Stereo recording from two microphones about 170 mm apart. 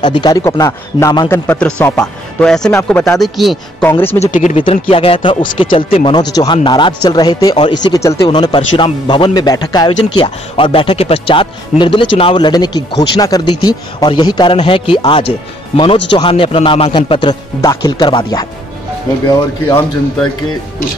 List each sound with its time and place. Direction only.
0.0 s speech: 25° left (ahead or behind)
1.5 s speech: 10° left (ahead or behind)
2.7 s speech: 15° left (ahead or behind)
3.2 s speech: centre (ahead or behind)
4.2 s speech: 45° left (ahead or behind)
4.6 s speech: 35° left (ahead or behind)